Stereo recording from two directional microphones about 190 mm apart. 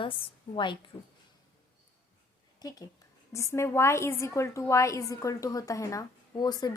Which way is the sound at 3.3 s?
15° left (ahead or behind).